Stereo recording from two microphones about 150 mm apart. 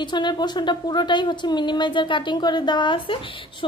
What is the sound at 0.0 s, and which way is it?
A woman's voice, 30° left (ahead or behind).